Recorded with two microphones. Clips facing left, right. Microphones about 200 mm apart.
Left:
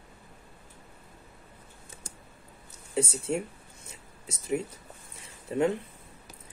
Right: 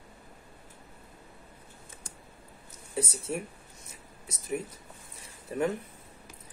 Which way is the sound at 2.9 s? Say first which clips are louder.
Left 4 dB; 25° left (ahead or behind).